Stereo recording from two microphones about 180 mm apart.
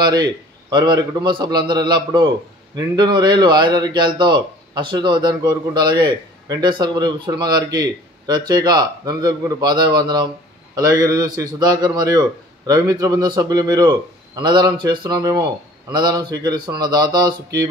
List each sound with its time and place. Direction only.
0.0 s a man's voice: 25° right (ahead or behind)